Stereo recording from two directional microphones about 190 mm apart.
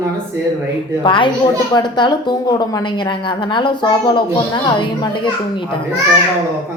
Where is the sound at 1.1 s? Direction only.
25° left (ahead or behind).